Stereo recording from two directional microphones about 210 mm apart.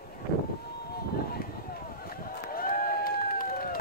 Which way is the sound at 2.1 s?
45° left (ahead or behind).